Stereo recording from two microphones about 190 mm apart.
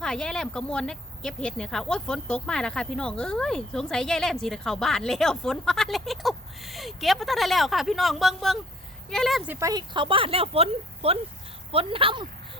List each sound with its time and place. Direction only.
0.0 s speech: 5° left (ahead or behind)
9.5 s speech: 15° right (ahead or behind)